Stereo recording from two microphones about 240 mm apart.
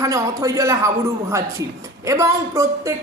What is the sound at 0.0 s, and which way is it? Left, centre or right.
A woman's voice, centre.